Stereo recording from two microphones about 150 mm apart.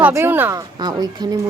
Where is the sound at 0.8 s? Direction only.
25° right (ahead or behind).